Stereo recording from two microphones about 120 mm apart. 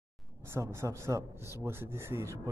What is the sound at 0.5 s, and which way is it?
Speech, 20° right (ahead or behind).